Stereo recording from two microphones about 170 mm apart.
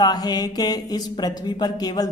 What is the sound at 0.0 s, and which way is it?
Speech, 25° left (ahead or behind).